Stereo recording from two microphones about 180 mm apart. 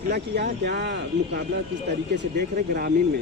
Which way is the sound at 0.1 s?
70° right (ahead or behind).